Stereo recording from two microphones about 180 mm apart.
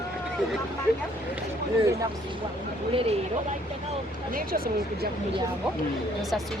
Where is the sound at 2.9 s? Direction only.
30° right (ahead or behind).